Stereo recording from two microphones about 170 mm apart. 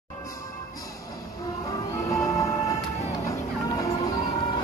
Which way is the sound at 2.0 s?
20° left (ahead or behind).